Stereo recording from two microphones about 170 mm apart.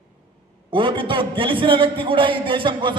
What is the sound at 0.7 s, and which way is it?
A man's voice, 30° right (ahead or behind).